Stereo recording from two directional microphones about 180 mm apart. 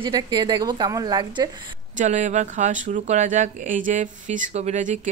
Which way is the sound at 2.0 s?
45° right (ahead or behind).